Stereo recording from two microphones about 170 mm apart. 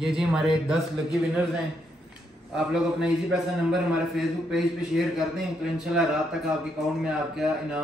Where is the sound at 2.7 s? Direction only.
5° right (ahead or behind).